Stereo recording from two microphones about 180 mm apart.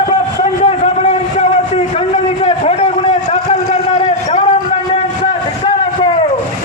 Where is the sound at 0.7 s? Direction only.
35° left (ahead or behind).